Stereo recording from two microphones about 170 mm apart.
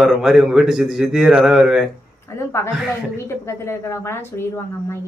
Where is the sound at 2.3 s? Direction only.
15° left (ahead or behind).